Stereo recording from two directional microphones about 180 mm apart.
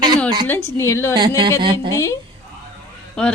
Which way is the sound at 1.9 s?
15° left (ahead or behind).